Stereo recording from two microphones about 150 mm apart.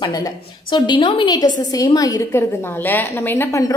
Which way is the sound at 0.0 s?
25° left (ahead or behind).